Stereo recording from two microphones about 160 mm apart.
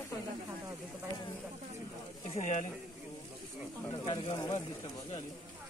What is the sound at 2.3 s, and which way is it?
Speech, 50° left (ahead or behind).